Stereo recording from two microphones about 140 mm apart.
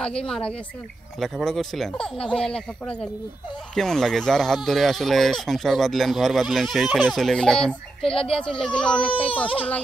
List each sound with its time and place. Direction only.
0.0 s speech: 5° left (ahead or behind)